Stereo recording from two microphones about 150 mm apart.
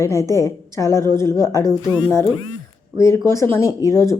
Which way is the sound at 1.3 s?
25° right (ahead or behind).